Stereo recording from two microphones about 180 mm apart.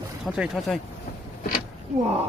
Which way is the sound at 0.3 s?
Centre (ahead or behind).